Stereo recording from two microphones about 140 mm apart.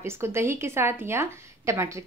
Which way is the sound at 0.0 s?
20° right (ahead or behind).